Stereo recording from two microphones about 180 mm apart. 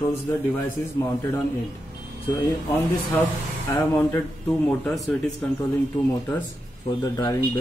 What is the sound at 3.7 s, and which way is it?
Speech, 10° left (ahead or behind).